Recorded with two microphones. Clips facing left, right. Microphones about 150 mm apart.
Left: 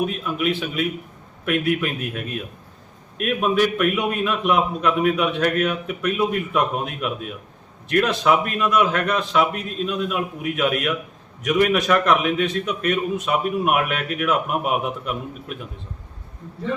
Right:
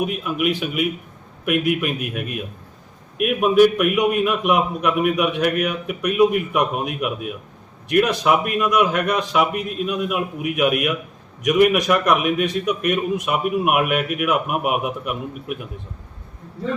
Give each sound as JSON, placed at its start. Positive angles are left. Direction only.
{"t": 0.0, "sound": "a man's voice", "side_deg": -10}